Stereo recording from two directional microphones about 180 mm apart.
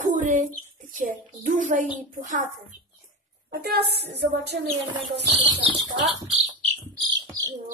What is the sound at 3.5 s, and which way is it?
A woman's voice, 60° right (ahead or behind).